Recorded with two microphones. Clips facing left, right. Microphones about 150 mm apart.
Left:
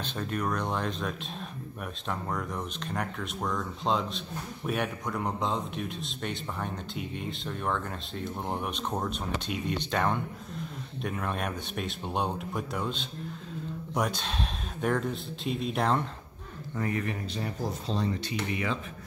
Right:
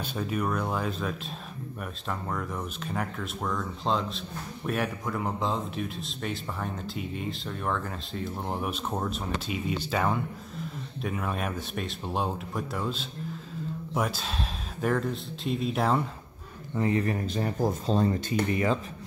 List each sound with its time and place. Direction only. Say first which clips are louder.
0.0 s a man's voice: right 2 dB; 5° right (ahead or behind)
16.7 s speech: right 5 dB; 25° right (ahead or behind)
17.0 s speech: right 5 dB; 45° right (ahead or behind)